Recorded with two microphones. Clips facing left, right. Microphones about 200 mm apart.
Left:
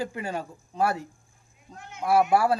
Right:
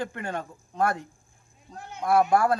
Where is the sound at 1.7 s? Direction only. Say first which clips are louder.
Right 3 dB; 35° right (ahead or behind).